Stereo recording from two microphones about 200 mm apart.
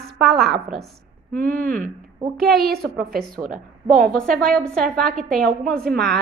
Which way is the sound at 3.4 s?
5° right (ahead or behind).